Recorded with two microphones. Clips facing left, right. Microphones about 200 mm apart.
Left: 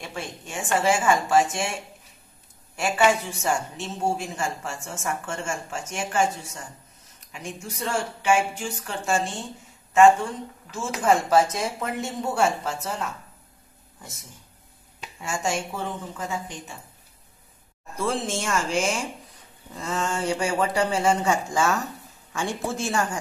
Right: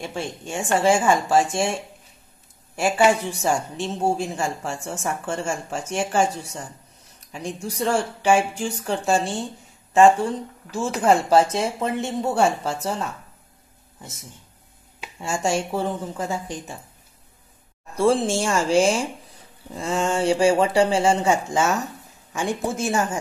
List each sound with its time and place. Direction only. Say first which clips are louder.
0.1 s speech: right 5 dB; 30° right (ahead or behind)
10.7 s speech: right 3 dB; 30° right (ahead or behind)
15.1 s speech: right 4 dB; 25° right (ahead or behind)
17.9 s speech: right 8 dB; 30° right (ahead or behind)